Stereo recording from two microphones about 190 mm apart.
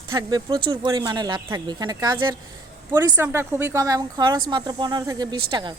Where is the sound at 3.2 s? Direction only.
10° right (ahead or behind).